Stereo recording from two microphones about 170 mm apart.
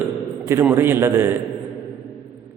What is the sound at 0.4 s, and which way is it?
Speech, 15° right (ahead or behind).